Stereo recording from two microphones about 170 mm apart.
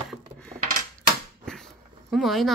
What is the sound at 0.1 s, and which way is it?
Coin, 5° left (ahead or behind).